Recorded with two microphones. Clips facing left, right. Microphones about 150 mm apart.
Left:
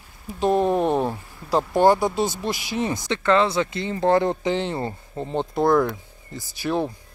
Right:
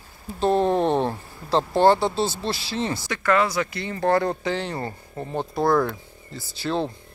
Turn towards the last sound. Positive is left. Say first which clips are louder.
# left 1 dB
turn(degrees=15)  # may be behind; listen again after turning